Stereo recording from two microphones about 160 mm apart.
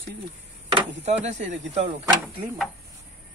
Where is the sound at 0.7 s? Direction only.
45° right (ahead or behind).